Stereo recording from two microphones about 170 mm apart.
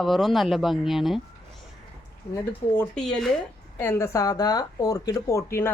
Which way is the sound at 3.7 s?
15° left (ahead or behind).